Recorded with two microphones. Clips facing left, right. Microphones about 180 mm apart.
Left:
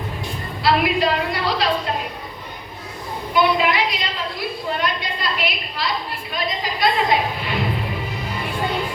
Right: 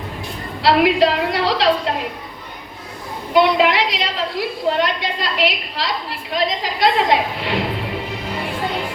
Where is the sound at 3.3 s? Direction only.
90° right.